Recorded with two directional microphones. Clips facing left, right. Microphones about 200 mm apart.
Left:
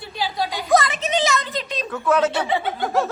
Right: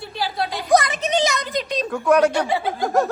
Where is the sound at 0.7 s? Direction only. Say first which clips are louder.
Right 1 dB; 15° right (ahead or behind).